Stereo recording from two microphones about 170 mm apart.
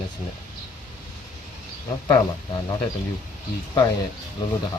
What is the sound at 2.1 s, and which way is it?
Speech, 25° left (ahead or behind).